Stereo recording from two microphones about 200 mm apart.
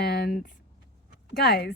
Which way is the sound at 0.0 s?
55° left (ahead or behind).